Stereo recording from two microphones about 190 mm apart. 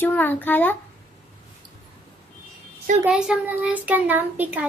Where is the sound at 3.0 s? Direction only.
5° right (ahead or behind).